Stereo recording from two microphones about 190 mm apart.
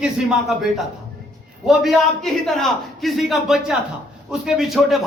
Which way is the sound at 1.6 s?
Centre (ahead or behind).